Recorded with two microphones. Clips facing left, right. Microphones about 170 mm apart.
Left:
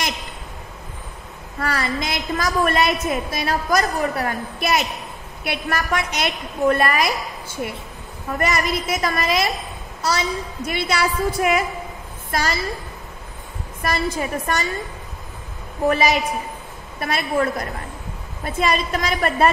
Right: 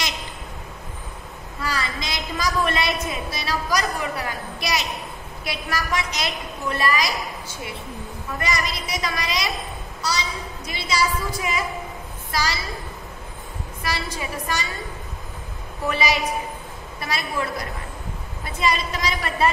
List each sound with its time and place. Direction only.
1.6 s a woman's voice: 55° left (ahead or behind)
8.4 s a woman's voice: 55° left (ahead or behind)
13.8 s a woman's voice: 50° left (ahead or behind)
17.0 s a woman's voice: 55° left (ahead or behind)